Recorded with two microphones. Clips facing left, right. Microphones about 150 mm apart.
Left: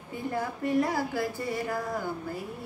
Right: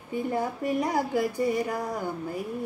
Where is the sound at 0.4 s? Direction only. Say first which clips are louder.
Left 3 dB; 15° right (ahead or behind).